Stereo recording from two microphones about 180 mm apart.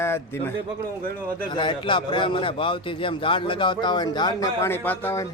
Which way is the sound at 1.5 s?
25° left (ahead or behind).